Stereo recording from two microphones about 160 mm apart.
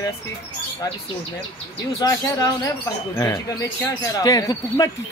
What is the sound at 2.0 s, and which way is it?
A man's voice, 20° left (ahead or behind).